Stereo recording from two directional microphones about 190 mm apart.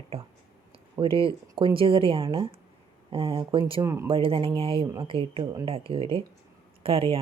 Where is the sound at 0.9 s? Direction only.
30° right (ahead or behind).